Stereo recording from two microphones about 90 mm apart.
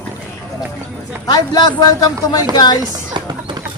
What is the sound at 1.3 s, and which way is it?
Speech, 50° left (ahead or behind).